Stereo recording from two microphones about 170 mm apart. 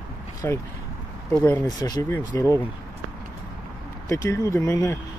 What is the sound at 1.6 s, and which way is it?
Speech, 25° left (ahead or behind).